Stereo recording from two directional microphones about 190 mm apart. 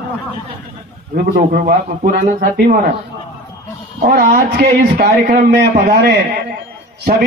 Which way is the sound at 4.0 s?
50° right (ahead or behind).